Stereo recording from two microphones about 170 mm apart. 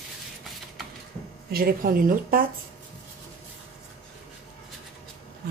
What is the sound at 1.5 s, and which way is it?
Speech, 60° right (ahead or behind).